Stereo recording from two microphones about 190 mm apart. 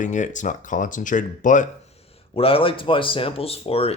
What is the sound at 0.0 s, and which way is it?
Speech, 40° left (ahead or behind).